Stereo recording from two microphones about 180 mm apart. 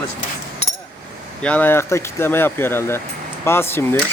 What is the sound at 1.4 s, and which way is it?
Speech, 10° left (ahead or behind).